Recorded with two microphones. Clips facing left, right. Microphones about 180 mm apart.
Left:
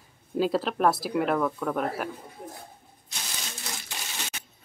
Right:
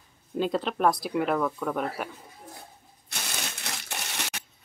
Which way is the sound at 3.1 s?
65° right (ahead or behind).